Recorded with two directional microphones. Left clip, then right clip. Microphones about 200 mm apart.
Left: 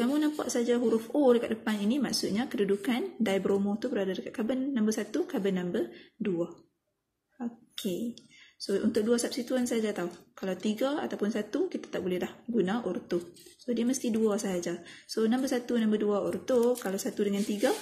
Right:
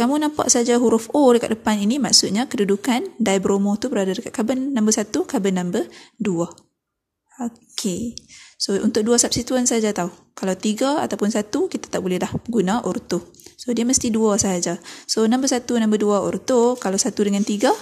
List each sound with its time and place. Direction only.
0.0 s speech: 45° right (ahead or behind)